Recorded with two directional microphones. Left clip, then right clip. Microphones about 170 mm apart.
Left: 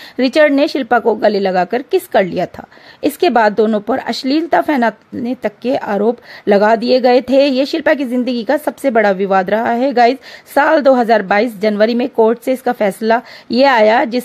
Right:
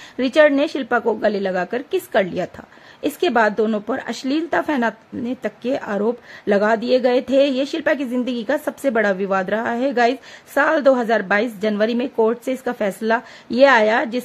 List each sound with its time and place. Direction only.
0.2 s a woman's voice: 35° left (ahead or behind)